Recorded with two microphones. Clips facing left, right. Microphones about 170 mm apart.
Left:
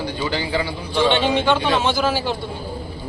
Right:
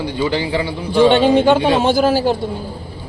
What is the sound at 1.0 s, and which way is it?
A man's voice, 40° right (ahead or behind).